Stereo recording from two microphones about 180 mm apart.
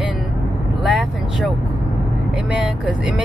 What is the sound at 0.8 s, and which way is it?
Speech, centre (ahead or behind).